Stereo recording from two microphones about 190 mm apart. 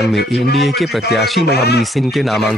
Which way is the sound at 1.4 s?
60° left (ahead or behind).